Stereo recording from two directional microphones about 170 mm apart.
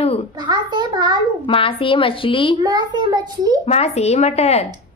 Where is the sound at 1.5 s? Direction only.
30° left (ahead or behind).